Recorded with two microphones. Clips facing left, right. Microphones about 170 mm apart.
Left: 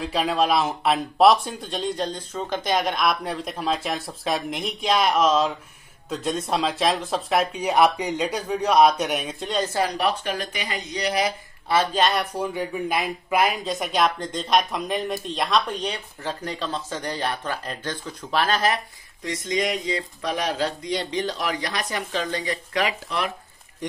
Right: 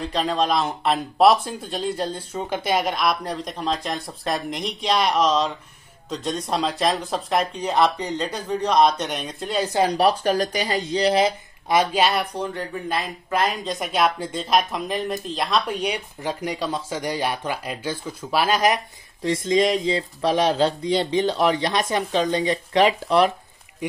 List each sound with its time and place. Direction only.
0.0 s speech: 5° left (ahead or behind)
9.8 s speech: 35° right (ahead or behind)
11.7 s speech: 10° right (ahead or behind)
19.2 s speech: 30° right (ahead or behind)
23.8 s speech: 10° right (ahead or behind)